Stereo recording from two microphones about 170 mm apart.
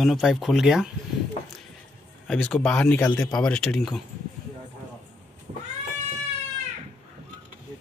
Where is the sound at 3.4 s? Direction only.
5° left (ahead or behind).